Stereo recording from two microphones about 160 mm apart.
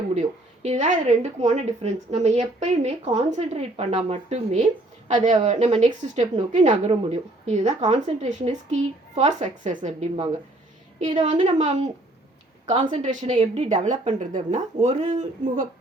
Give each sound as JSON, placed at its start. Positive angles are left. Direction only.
{"t": 0.1, "sound": "speech", "side_deg": -45}